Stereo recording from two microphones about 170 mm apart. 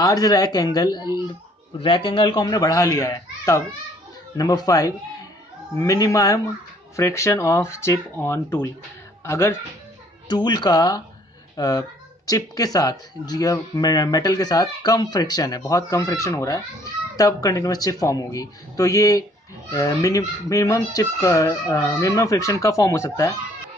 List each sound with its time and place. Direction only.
0.0 s speech: 20° left (ahead or behind)